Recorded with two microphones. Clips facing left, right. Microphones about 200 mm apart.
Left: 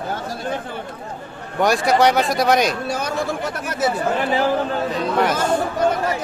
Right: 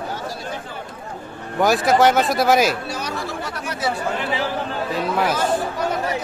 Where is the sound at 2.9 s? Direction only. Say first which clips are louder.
Left 4 dB; 50° left (ahead or behind).